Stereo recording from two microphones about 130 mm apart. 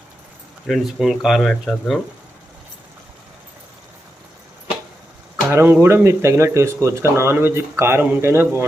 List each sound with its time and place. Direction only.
0.7 s speech: centre (ahead or behind)
5.5 s speech: 15° right (ahead or behind)